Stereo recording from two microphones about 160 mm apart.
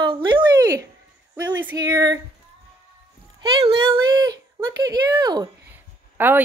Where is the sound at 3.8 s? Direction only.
25° right (ahead or behind).